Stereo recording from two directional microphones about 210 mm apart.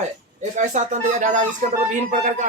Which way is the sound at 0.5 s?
35° right (ahead or behind).